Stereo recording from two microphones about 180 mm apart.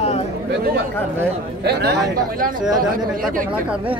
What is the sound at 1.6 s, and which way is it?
Speech, 65° right (ahead or behind).